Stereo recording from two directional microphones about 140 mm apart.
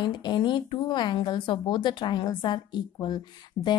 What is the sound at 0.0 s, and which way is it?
A woman's voice, 35° left (ahead or behind).